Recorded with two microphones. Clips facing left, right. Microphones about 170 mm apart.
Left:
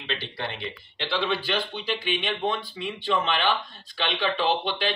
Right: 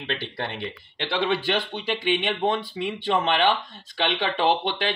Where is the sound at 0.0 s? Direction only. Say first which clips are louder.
Right 2 dB; 55° right (ahead or behind).